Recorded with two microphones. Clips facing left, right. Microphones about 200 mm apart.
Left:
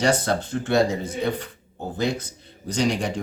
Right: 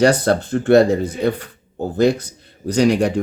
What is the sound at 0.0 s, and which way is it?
Speech, 60° right (ahead or behind).